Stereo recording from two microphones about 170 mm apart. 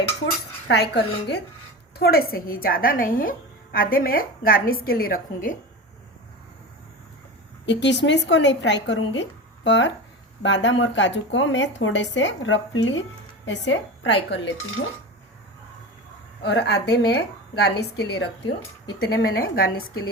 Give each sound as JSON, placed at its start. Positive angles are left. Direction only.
{"t": 0.7, "sound": "a woman's voice", "side_deg": 75}
{"t": 2.0, "sound": "a woman's voice", "side_deg": 60}
{"t": 7.6, "sound": "speech", "side_deg": 90}
{"t": 16.4, "sound": "a woman's voice", "side_deg": 85}